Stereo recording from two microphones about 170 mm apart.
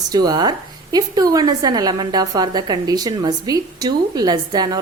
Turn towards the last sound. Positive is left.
turn(degrees=-25)  # may be behind; listen again after turning